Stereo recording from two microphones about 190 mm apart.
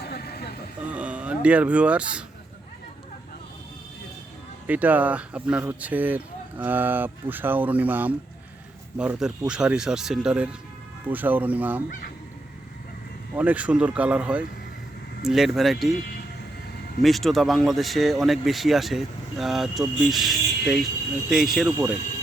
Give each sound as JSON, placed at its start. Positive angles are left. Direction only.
{"t": 0.1, "sound": "a sound", "side_deg": 55}
{"t": 0.9, "sound": "speech", "side_deg": -5}
{"t": 4.6, "sound": "speech", "side_deg": -10}
{"t": 13.3, "sound": "speech", "side_deg": -5}
{"t": 17.0, "sound": "speech", "side_deg": 0}